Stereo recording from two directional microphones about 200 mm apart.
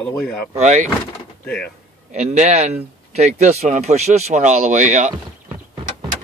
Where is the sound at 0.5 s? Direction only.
35° right (ahead or behind).